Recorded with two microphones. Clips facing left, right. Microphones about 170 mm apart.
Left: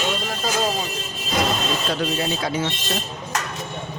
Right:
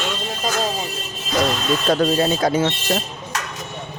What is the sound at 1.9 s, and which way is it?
Speech, 45° right (ahead or behind).